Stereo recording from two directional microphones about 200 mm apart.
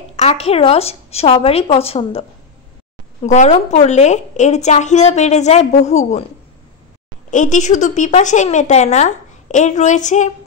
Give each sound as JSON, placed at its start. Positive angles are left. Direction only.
{"t": 0.1, "sound": "a woman's voice", "side_deg": 30}
{"t": 7.2, "sound": "a woman's voice", "side_deg": 40}